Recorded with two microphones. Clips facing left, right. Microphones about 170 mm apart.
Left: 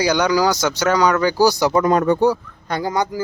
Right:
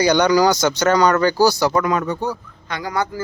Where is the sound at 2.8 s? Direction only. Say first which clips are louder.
Left 2 dB; 25° left (ahead or behind).